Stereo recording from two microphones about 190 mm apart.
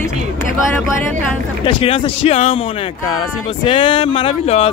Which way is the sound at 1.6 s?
30° left (ahead or behind).